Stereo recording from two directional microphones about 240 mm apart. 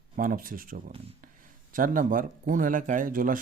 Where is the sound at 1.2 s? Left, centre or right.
Right.